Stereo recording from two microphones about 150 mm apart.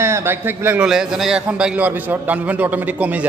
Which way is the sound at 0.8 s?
5° right (ahead or behind).